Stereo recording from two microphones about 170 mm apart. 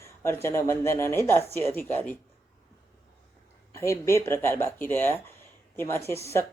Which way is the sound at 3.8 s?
15° left (ahead or behind).